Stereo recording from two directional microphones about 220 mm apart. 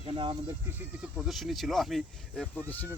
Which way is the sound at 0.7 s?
5° right (ahead or behind).